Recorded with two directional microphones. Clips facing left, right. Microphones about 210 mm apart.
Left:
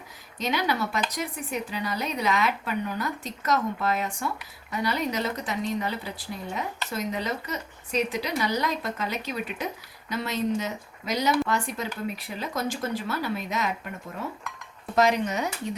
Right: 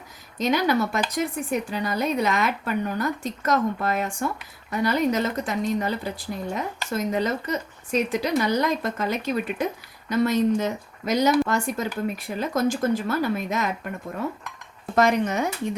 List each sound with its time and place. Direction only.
0.3 s speech: 45° right (ahead or behind)
14.9 s speech: 50° right (ahead or behind)